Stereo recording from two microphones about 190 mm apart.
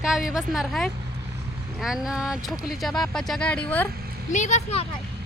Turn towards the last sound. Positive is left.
turn(degrees=35)  # may be behind; listen again after turning